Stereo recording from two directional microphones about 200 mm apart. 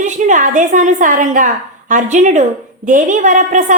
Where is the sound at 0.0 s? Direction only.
40° right (ahead or behind).